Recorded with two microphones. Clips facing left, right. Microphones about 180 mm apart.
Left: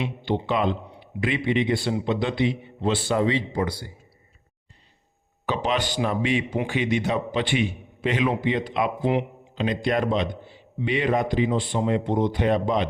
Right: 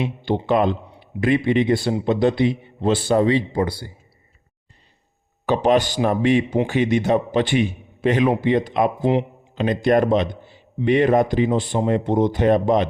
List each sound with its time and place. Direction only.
0.0 s a man's voice: 45° right (ahead or behind)
5.5 s speech: 40° right (ahead or behind)